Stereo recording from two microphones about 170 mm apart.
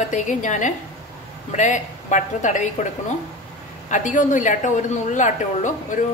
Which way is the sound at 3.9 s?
50° left (ahead or behind).